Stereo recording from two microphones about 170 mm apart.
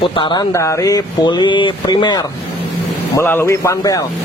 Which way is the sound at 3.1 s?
15° left (ahead or behind).